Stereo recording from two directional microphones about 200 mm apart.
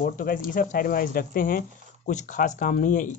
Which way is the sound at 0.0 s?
45° left (ahead or behind).